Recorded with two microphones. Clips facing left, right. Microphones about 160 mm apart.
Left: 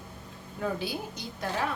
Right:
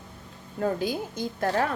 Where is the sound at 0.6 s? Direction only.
45° right (ahead or behind).